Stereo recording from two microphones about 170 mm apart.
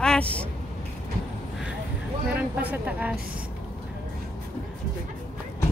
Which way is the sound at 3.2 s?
60° right (ahead or behind).